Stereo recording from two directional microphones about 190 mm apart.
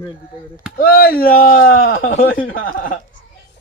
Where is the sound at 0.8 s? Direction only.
50° left (ahead or behind).